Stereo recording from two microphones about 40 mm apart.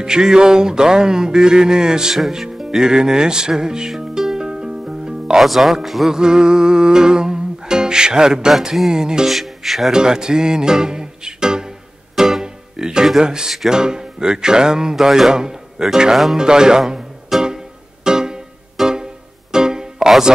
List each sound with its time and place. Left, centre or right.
0.0 s music: centre
5.4 s speech: centre
6.1 s music: centre
9.3 s speech: centre
9.9 s music: centre
17.3 s music: centre
18.0 s music: centre
18.8 s music: centre